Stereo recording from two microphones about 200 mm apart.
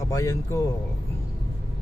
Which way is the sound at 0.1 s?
15° left (ahead or behind).